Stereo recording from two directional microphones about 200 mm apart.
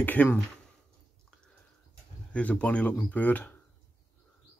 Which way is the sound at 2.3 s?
5° left (ahead or behind).